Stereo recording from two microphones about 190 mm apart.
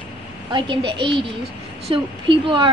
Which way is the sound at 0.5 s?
25° right (ahead or behind).